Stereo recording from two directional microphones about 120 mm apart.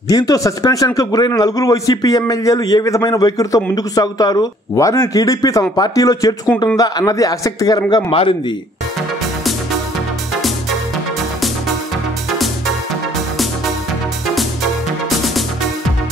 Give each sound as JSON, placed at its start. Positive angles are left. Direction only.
{"t": 0.1, "sound": "a man's voice", "side_deg": 35}
{"t": 8.1, "sound": "a man's voice", "side_deg": 50}
{"t": 15.0, "sound": "music", "side_deg": 0}